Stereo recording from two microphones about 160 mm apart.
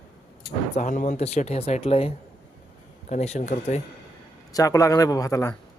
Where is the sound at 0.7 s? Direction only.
50° left (ahead or behind).